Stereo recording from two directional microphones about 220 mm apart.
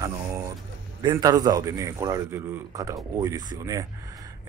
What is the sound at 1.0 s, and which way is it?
Speech, 20° right (ahead or behind).